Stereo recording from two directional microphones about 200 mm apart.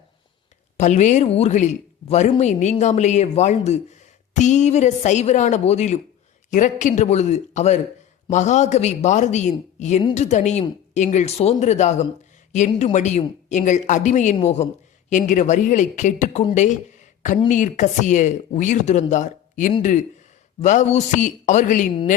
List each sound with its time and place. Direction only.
0.8 s speech: 35° left (ahead or behind)
17.5 s speech: 40° left (ahead or behind)